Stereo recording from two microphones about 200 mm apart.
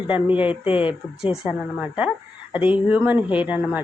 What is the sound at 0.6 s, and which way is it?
Speech, 25° left (ahead or behind).